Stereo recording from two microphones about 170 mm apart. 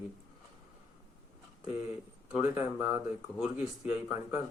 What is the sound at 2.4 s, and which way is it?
Speech, 15° right (ahead or behind).